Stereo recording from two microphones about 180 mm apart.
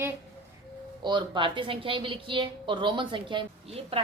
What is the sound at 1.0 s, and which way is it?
A woman's voice, 25° right (ahead or behind).